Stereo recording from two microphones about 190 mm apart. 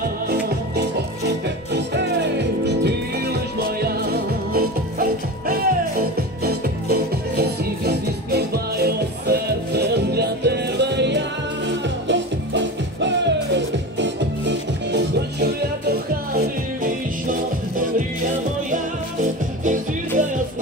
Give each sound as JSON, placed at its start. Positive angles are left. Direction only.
{"t": 0.3, "sound": "music", "side_deg": -60}
{"t": 16.3, "sound": "music", "side_deg": -45}